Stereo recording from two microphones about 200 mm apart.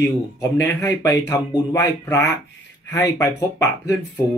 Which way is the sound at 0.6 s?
10° left (ahead or behind).